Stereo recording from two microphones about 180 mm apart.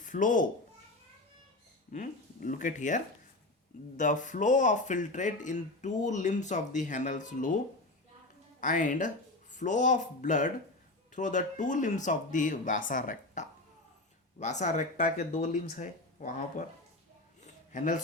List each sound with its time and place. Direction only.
0.0 s speech: 45° left (ahead or behind)
1.9 s speech: 45° left (ahead or behind)
8.6 s speech: 45° left (ahead or behind)
17.4 s a sound: 45° left (ahead or behind)